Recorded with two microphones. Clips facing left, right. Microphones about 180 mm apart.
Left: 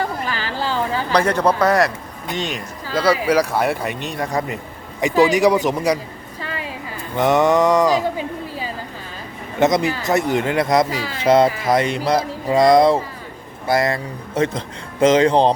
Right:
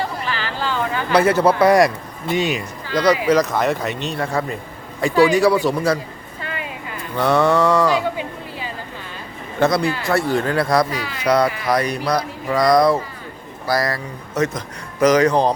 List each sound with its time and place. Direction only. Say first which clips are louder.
0.0 s a sound: left 1 dB; 40° left (ahead or behind)
1.1 s a man's voice: right 3 dB; 5° right (ahead or behind)
2.9 s speech: right 1 dB; 5° left (ahead or behind)
6.4 s a sound: left 1 dB; 35° left (ahead or behind)
7.2 s speech: left 1 dB; 20° left (ahead or behind)
9.6 s a man's voice: left 1 dB; 20° left (ahead or behind)